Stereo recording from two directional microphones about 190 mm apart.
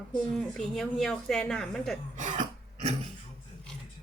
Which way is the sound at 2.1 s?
40° right (ahead or behind).